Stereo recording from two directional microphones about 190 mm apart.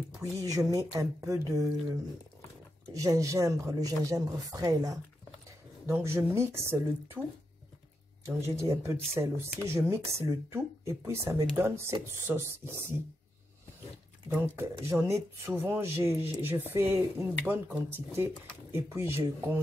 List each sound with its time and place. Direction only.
0.2 s speech: 20° right (ahead or behind)
2.9 s speech: 15° right (ahead or behind)
8.4 s speech: 15° right (ahead or behind)
14.3 s speech: 15° right (ahead or behind)